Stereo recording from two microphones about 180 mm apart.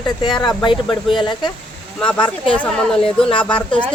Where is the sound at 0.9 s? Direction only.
Centre (ahead or behind).